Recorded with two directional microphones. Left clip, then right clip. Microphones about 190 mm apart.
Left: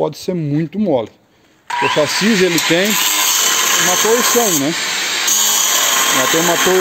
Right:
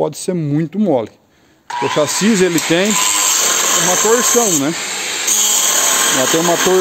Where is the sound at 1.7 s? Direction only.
15° left (ahead or behind).